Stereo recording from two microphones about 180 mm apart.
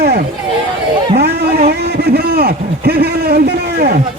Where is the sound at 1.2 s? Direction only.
60° right (ahead or behind).